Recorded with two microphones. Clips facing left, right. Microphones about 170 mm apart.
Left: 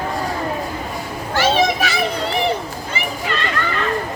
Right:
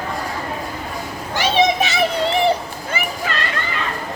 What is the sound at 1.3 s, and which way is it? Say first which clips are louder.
Children playing: even; 20° right (ahead or behind).